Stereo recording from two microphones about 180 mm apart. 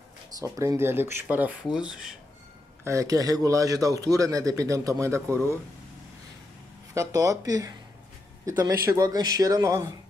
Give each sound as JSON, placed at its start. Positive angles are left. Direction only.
{"t": 0.4, "sound": "speech", "side_deg": -15}
{"t": 2.8, "sound": "a man's voice", "side_deg": -15}
{"t": 6.9, "sound": "a man's voice", "side_deg": -20}